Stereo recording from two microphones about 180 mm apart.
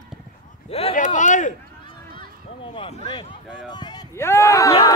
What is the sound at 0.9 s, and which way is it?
Speech, 45° left (ahead or behind).